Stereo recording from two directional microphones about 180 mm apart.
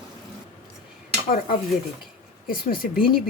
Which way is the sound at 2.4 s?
55° left (ahead or behind).